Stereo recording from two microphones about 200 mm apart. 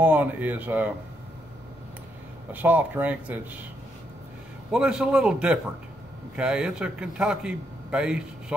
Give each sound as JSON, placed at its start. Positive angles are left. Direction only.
{"t": 0.0, "sound": "speech", "side_deg": -10}
{"t": 2.5, "sound": "speech", "side_deg": -10}
{"t": 4.6, "sound": "a man's voice", "side_deg": -5}